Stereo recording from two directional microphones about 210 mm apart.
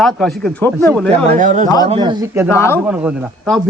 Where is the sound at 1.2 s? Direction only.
35° right (ahead or behind).